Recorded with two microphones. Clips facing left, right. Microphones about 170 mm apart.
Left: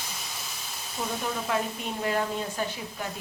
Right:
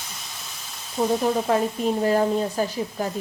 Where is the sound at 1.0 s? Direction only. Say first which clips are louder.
Right 10 dB; 30° right (ahead or behind).